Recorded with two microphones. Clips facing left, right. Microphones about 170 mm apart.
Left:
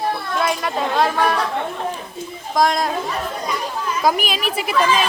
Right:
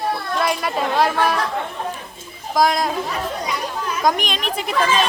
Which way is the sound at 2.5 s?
Centre (ahead or behind).